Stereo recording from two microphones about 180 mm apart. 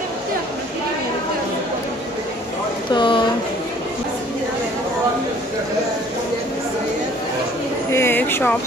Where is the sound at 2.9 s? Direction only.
25° left (ahead or behind).